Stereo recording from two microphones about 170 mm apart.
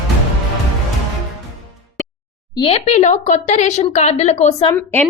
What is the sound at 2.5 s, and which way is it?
Speech, 35° left (ahead or behind).